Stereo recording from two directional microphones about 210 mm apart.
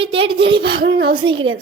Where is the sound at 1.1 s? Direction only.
25° right (ahead or behind).